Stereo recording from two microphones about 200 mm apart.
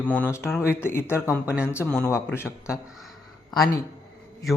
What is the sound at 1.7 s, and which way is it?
Speech, 10° left (ahead or behind).